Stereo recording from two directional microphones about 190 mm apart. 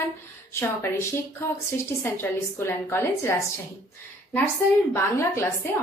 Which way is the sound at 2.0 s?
10° left (ahead or behind).